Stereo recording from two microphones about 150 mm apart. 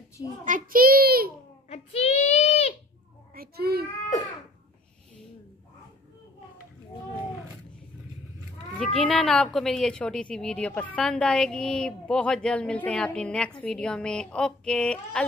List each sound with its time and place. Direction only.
0.5 s a sound: 65° right (ahead or behind); by 1.3 s 80° right
1.7 s child singing: 45° left (ahead or behind)
3.3 s child singing: 90° right
8.7 s a woman's voice: 5° left (ahead or behind)